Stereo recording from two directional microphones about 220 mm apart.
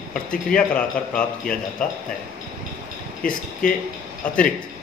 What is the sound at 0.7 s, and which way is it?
Speech, 5° left (ahead or behind).